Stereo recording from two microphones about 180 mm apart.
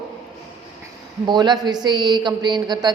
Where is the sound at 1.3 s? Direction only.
25° right (ahead or behind).